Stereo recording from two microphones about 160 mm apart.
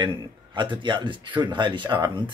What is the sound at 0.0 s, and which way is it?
Speech, 30° right (ahead or behind).